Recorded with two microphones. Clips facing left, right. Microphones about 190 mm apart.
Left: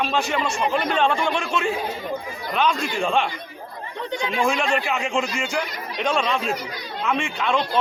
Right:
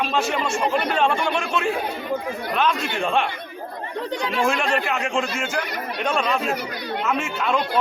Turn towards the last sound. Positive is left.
turn(degrees=-5)  # may be behind; listen again after turning